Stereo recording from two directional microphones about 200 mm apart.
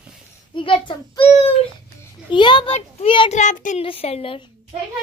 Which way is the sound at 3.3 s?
35° left (ahead or behind).